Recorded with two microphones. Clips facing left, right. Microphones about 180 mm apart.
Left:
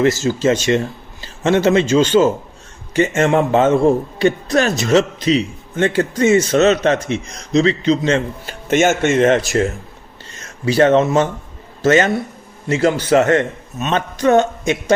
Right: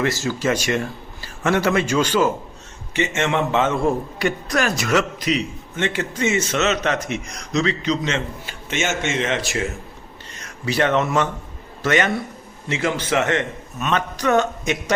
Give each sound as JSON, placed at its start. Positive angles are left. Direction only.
{"t": 0.0, "sound": "a man's voice", "side_deg": 25}
{"t": 3.2, "sound": "a man's voice", "side_deg": 35}
{"t": 8.4, "sound": "speech", "side_deg": 50}
{"t": 10.4, "sound": "a man's voice", "side_deg": 30}
{"t": 13.7, "sound": "a man's voice", "side_deg": 25}